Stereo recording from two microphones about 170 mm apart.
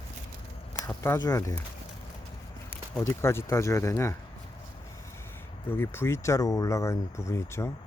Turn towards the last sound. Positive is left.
turn(degrees=15)  # may be behind; listen again after turning